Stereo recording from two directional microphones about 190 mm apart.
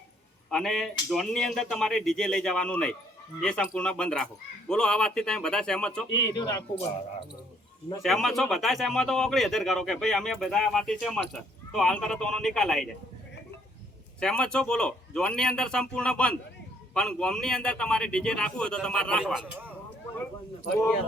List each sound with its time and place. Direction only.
0.5 s speech: centre (ahead or behind)
6.1 s speech: 20° left (ahead or behind)
8.0 s speech: centre (ahead or behind)
14.2 s speech: 5° left (ahead or behind)